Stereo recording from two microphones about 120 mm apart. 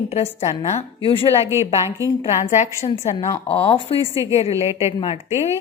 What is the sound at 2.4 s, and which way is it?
Speech, 75° left (ahead or behind).